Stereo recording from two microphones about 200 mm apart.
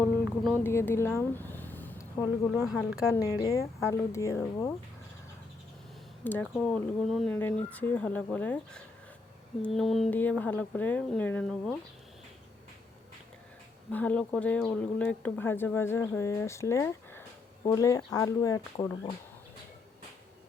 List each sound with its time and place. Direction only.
0.6 s a sound: 10° left (ahead or behind)
2.2 s speech: 5° right (ahead or behind)
3.4 s speech: 15° left (ahead or behind)
6.2 s speech: 10° left (ahead or behind)
13.9 s speech: 5° left (ahead or behind)